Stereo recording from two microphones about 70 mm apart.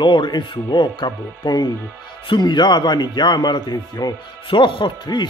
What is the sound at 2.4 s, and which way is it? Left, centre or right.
Speech, left.